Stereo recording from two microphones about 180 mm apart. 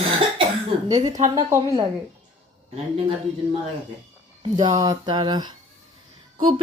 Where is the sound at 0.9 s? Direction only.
20° right (ahead or behind).